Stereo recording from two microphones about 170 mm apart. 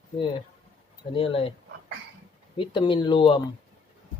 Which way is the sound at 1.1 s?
35° left (ahead or behind).